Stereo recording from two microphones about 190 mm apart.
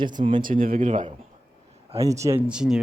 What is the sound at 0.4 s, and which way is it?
Speech, 45° right (ahead or behind).